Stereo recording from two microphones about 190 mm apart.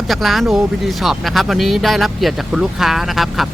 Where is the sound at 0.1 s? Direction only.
Centre (ahead or behind).